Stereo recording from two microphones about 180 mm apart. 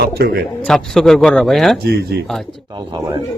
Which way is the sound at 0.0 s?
60° right (ahead or behind).